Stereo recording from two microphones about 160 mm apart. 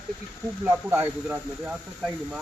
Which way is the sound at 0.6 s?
15° right (ahead or behind).